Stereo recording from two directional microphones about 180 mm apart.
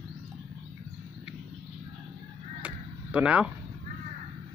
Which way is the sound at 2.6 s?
5° right (ahead or behind).